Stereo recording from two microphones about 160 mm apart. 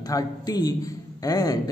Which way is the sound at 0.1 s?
25° left (ahead or behind).